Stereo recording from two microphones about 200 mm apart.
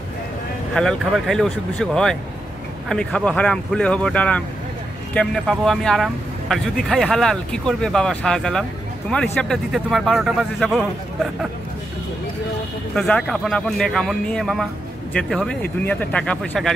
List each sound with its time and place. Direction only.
0.7 s speech: centre (ahead or behind)
12.9 s speech: 5° left (ahead or behind)